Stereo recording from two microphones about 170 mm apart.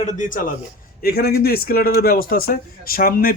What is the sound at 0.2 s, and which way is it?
Speech, 55° left (ahead or behind).